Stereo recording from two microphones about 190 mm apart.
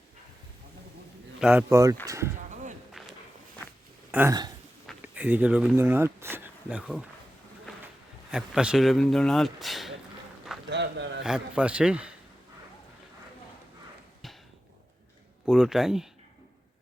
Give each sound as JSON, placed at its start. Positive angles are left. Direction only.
{"t": 1.4, "sound": "speech", "side_deg": -5}
{"t": 1.7, "sound": "speech", "side_deg": -15}
{"t": 3.0, "sound": "walk", "side_deg": 0}
{"t": 4.1, "sound": "speech", "side_deg": -10}
{"t": 8.3, "sound": "speech", "side_deg": -5}
{"t": 10.7, "sound": "a sound", "side_deg": -65}
{"t": 11.2, "sound": "speech", "side_deg": -5}
{"t": 15.4, "sound": "speech", "side_deg": 0}